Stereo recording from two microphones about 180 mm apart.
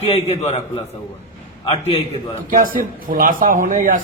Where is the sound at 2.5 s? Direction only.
50° right (ahead or behind).